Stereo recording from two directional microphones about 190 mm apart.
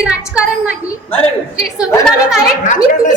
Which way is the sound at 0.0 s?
5° right (ahead or behind).